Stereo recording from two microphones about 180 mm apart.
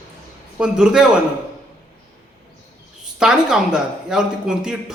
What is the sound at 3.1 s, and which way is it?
A man's voice, 5° right (ahead or behind).